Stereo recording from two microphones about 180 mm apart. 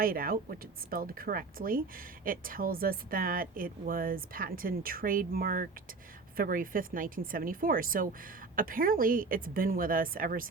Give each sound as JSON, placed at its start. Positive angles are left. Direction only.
{"t": 0.0, "sound": "speech", "side_deg": -55}